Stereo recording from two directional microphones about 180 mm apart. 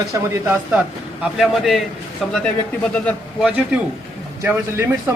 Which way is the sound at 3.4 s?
5° right (ahead or behind).